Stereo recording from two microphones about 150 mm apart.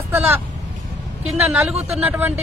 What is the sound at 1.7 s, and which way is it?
Speech, 45° right (ahead or behind).